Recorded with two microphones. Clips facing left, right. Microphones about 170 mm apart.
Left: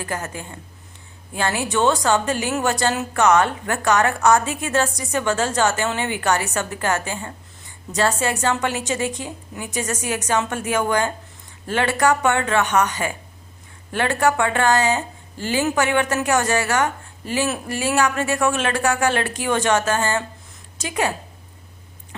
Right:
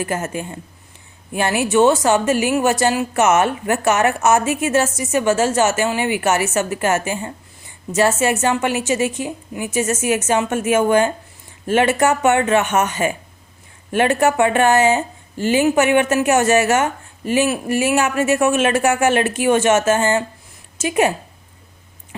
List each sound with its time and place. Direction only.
0.0 s a woman's voice: 20° right (ahead or behind)